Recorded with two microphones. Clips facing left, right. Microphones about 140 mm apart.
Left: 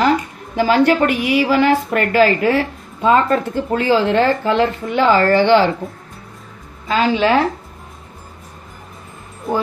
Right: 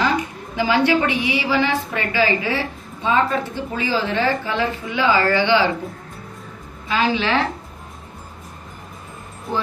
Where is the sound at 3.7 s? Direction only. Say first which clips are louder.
Left 7 dB; 55° left (ahead or behind).